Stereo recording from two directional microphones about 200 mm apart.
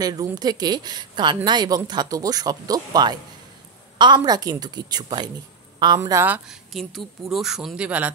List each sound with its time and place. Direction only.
0.0 s a woman's voice: 20° right (ahead or behind)